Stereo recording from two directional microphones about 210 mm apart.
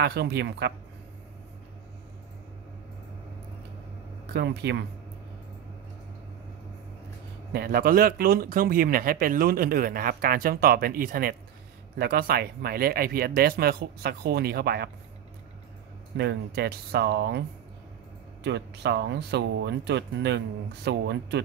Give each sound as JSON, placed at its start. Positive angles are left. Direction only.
{"t": 0.0, "sound": "speech", "side_deg": -50}
{"t": 4.3, "sound": "speech", "side_deg": -55}
{"t": 7.5, "sound": "speech", "side_deg": -45}
{"t": 16.2, "sound": "speech", "side_deg": -50}
{"t": 18.4, "sound": "speech", "side_deg": -55}